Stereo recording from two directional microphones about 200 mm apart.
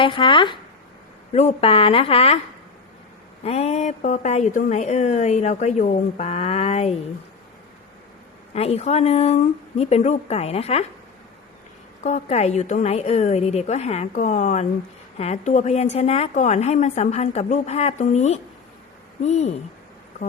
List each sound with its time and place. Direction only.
0.0 s speech: 25° left (ahead or behind)
3.4 s speech: 30° left (ahead or behind)
8.5 s speech: 30° left (ahead or behind)
12.0 s speech: 35° left (ahead or behind)